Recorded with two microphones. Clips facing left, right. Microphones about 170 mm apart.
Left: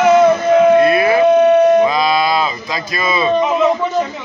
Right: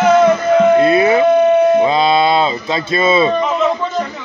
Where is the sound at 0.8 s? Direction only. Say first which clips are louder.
Even; 25° right (ahead or behind).